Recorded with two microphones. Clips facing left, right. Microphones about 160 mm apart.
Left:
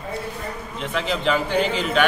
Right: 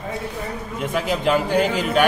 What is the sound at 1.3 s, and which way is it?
Speech, 45° right (ahead or behind).